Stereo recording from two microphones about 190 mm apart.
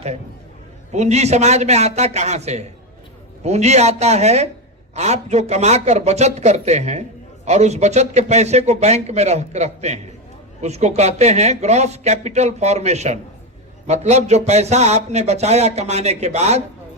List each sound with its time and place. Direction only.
0.9 s speech: 35° right (ahead or behind)